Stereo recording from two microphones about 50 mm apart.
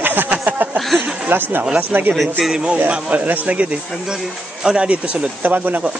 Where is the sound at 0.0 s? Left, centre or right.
Right.